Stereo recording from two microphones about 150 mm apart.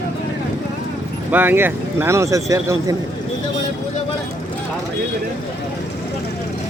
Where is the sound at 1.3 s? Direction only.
15° right (ahead or behind).